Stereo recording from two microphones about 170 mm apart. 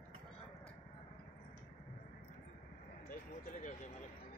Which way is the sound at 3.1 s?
50° left (ahead or behind).